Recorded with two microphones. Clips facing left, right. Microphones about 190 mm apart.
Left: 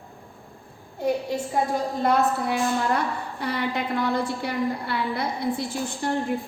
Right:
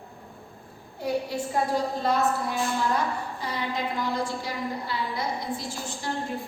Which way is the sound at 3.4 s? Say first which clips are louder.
Left 5 dB; 65° left (ahead or behind).